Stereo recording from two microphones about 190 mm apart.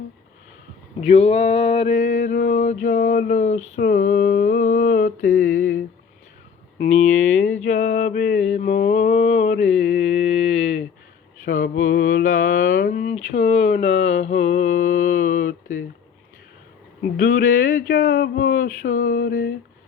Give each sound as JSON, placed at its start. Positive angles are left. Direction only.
{"t": 1.0, "sound": "male singing", "side_deg": 30}
{"t": 6.7, "sound": "a sound", "side_deg": 40}
{"t": 7.7, "sound": "mantra", "side_deg": 40}
{"t": 10.2, "sound": "a sound", "side_deg": 35}
{"t": 11.4, "sound": "mantra", "side_deg": 45}
{"t": 17.0, "sound": "male singing", "side_deg": 50}